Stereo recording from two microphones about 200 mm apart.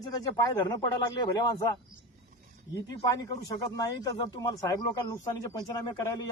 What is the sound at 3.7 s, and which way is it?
Speech, 15° left (ahead or behind).